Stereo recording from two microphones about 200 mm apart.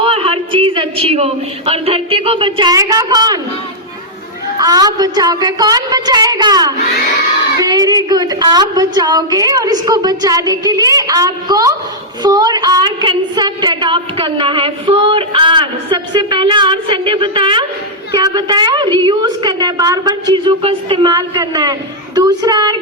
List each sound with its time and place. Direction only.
0.0 s a woman's voice: 25° right (ahead or behind)
4.5 s a woman's voice: 20° right (ahead or behind)